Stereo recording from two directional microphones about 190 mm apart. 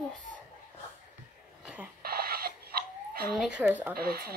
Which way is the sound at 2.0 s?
55° right (ahead or behind).